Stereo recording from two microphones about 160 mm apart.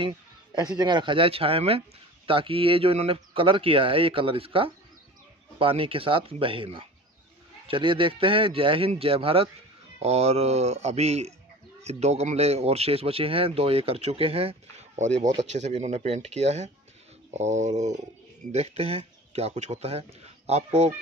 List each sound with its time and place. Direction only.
0.7 s speech: 30° right (ahead or behind)